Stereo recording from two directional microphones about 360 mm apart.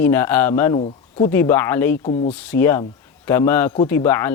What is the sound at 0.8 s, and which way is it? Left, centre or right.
Speech, centre.